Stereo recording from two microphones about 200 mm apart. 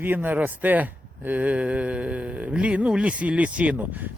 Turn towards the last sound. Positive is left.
turn(degrees=-10)  # may be behind; listen again after turning